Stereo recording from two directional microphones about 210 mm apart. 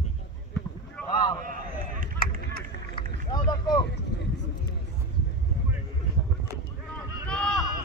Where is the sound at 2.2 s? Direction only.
45° left (ahead or behind).